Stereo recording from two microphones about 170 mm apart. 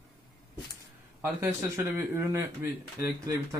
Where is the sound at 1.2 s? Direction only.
15° right (ahead or behind).